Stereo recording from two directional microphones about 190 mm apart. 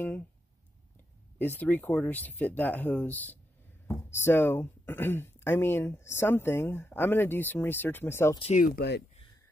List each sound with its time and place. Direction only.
1.4 s speech: 10° left (ahead or behind)
8.4 s speech: 35° left (ahead or behind)
8.6 s speech: 60° left (ahead or behind)